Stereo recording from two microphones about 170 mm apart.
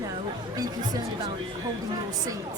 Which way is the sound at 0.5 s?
25° right (ahead or behind).